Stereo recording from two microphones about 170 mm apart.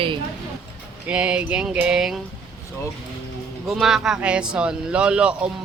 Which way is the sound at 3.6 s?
Centre (ahead or behind).